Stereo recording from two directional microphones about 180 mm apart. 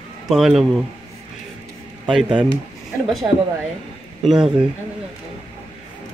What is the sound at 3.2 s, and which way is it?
Speech, 15° right (ahead or behind).